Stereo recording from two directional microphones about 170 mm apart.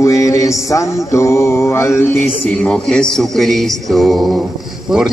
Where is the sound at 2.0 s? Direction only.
10° left (ahead or behind).